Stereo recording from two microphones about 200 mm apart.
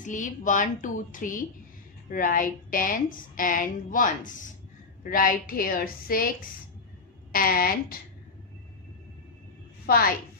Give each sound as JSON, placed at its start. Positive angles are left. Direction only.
{"t": 0.0, "sound": "a woman's voice", "side_deg": 40}
{"t": 7.3, "sound": "a woman's voice", "side_deg": 45}
{"t": 9.8, "sound": "a woman's voice", "side_deg": 50}